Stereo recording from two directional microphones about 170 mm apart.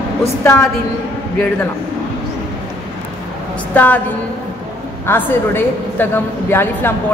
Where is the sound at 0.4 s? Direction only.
15° left (ahead or behind).